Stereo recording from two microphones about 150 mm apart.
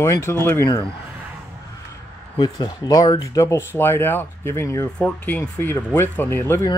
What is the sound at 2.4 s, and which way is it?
Speech, 25° left (ahead or behind).